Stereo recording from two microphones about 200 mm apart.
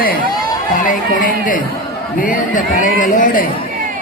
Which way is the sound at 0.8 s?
40° left (ahead or behind).